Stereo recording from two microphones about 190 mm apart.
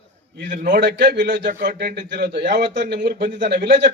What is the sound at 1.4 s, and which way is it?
Speech, 45° right (ahead or behind).